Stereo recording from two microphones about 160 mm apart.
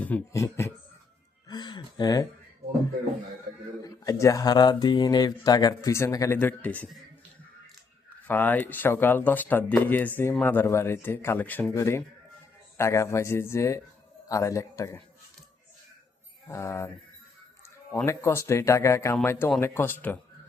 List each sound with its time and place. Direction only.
0.0 s speech: 15° left (ahead or behind)
3.8 s speech: 20° left (ahead or behind)
8.3 s speech: 10° left (ahead or behind)
16.5 s speech: 15° left (ahead or behind)
18.0 s speech: 15° left (ahead or behind)